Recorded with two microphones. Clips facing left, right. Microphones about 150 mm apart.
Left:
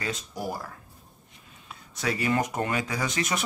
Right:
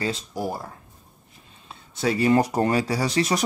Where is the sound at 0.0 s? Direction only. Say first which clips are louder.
Right 5 dB; 30° right (ahead or behind).